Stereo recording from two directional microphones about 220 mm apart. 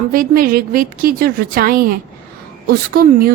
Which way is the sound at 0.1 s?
40° right (ahead or behind).